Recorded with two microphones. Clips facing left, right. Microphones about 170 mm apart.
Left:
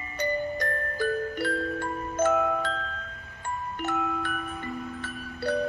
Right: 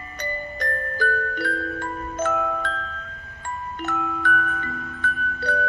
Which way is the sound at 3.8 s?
15° left (ahead or behind).